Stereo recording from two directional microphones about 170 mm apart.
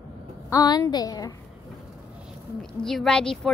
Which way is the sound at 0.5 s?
20° left (ahead or behind).